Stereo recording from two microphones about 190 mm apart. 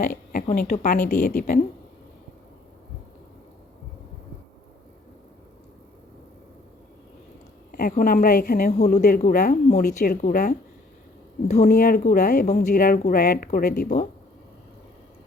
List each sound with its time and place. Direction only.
0.0 s a woman's voice: 45° left (ahead or behind)
7.7 s a woman's voice: 50° left (ahead or behind)
11.5 s a woman's voice: 45° left (ahead or behind)